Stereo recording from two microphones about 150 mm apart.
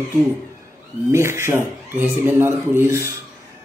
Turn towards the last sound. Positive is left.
turn(degrees=-20)  # may be behind; listen again after turning